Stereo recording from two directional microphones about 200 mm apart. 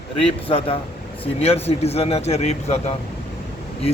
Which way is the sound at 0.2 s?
25° left (ahead or behind).